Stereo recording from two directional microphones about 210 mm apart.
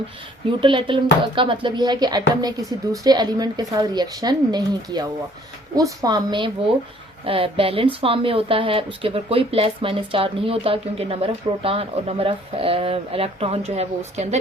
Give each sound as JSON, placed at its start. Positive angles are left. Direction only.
{"t": 0.6, "sound": "speech", "side_deg": -25}